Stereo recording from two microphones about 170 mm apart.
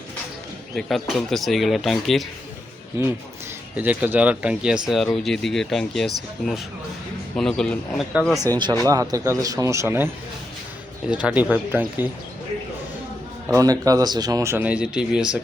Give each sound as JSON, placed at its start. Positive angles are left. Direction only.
{"t": 0.8, "sound": "speech", "side_deg": 0}
{"t": 3.8, "sound": "a man's voice", "side_deg": -10}
{"t": 7.3, "sound": "speech", "side_deg": 5}
{"t": 8.4, "sound": "speech", "side_deg": -25}
{"t": 11.1, "sound": "a man's voice", "side_deg": -5}
{"t": 13.5, "sound": "a man's voice", "side_deg": -20}